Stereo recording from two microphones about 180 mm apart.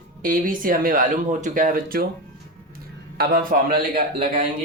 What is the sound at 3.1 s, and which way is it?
Speech, 55° right (ahead or behind).